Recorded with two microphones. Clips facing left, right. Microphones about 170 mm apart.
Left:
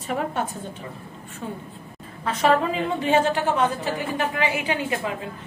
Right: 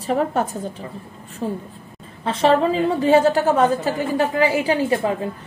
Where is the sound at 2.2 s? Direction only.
30° right (ahead or behind).